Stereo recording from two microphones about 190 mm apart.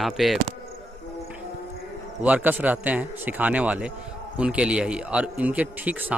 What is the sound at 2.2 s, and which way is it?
A man's voice, 10° right (ahead or behind).